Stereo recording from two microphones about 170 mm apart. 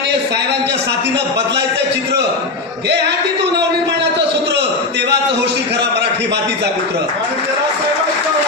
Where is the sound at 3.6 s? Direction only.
90° right.